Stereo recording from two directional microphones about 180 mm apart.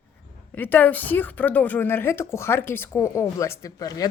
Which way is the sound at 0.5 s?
10° left (ahead or behind).